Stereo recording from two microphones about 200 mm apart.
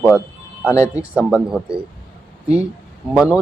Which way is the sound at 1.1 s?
5° right (ahead or behind).